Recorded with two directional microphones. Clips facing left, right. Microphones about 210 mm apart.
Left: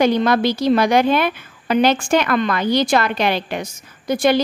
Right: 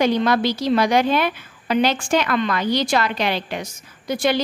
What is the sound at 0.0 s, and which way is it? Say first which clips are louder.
A woman's voice: left 2 dB; 50° left (ahead or behind).